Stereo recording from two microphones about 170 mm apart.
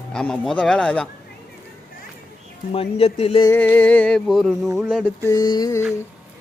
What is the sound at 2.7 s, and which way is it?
Speech, 35° left (ahead or behind).